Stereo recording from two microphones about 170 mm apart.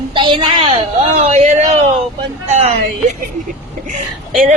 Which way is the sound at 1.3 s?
40° right (ahead or behind).